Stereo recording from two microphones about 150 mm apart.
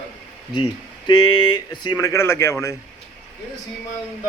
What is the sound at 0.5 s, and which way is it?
Speech, 30° left (ahead or behind).